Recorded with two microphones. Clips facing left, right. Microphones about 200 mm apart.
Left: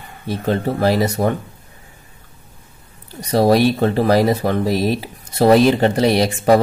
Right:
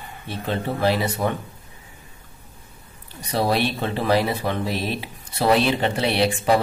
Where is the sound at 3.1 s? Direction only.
40° left (ahead or behind).